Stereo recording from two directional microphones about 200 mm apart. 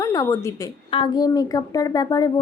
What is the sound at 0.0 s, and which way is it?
A woman's voice, 15° left (ahead or behind).